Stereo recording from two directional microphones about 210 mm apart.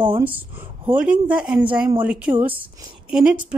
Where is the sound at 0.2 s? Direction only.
10° right (ahead or behind).